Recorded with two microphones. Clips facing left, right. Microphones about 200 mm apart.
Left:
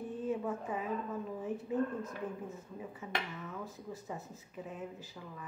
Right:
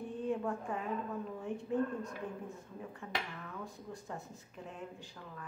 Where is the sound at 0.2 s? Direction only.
5° left (ahead or behind).